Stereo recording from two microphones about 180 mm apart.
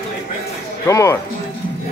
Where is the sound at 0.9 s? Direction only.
15° left (ahead or behind).